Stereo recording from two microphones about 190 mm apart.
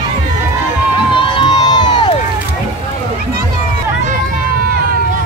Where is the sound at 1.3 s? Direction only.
20° left (ahead or behind).